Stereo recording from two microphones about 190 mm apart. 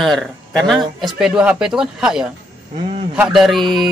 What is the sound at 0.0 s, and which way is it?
Speech, centre (ahead or behind).